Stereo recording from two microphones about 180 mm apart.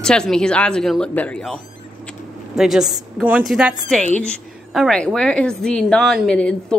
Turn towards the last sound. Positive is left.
turn(degrees=5)  # may be behind; listen again after turning